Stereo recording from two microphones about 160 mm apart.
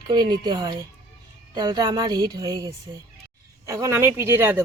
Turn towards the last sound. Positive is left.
turn(degrees=-15)  # may be behind; listen again after turning